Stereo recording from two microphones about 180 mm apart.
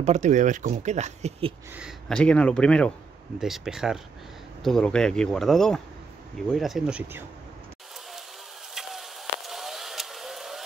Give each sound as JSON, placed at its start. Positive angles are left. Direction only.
{"t": 0.0, "sound": "speech", "side_deg": -40}
{"t": 1.7, "sound": "speech", "side_deg": -5}
{"t": 8.7, "sound": "vehicle", "side_deg": 0}